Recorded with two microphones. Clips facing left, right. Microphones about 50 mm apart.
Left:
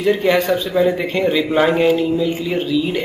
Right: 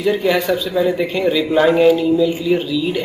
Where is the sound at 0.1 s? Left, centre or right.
Left.